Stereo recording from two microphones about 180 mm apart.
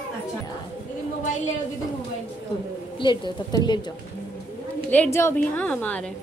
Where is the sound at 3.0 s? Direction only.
25° left (ahead or behind).